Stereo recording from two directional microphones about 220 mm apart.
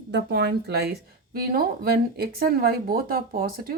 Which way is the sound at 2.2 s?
45° right (ahead or behind).